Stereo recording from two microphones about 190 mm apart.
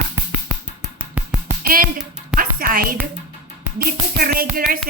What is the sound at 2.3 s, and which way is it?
Music, 50° right (ahead or behind).